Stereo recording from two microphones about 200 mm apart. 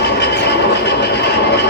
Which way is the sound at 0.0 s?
55° left (ahead or behind).